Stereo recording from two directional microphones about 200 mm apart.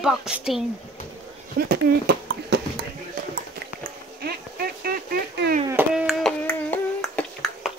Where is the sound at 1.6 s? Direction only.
50° right (ahead or behind).